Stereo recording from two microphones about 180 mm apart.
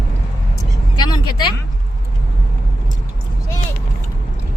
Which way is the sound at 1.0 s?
25° left (ahead or behind).